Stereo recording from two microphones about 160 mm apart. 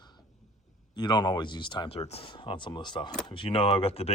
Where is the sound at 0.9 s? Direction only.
25° left (ahead or behind).